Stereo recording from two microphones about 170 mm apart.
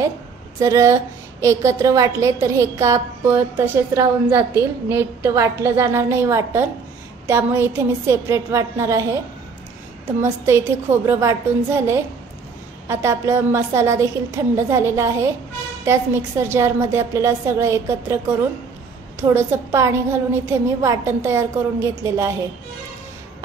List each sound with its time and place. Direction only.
0.6 s a woman's voice: 15° right (ahead or behind)
10.2 s a woman's voice: 15° right (ahead or behind)